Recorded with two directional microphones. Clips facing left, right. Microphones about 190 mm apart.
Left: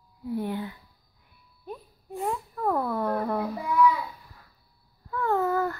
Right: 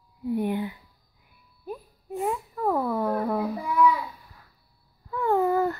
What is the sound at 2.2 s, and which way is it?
A child's voice, 5° right (ahead or behind).